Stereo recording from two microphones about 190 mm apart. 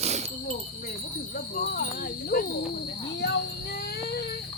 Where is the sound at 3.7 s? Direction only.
55° left (ahead or behind).